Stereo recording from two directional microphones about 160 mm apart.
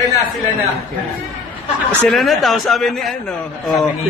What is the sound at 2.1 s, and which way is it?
A man's voice, centre (ahead or behind).